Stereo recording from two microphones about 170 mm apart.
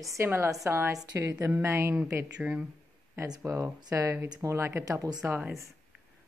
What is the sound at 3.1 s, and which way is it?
Speech, 20° right (ahead or behind).